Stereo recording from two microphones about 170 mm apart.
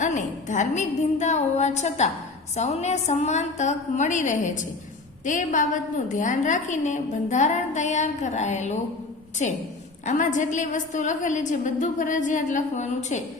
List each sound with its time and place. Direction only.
0.0 s a woman's voice: 45° left (ahead or behind)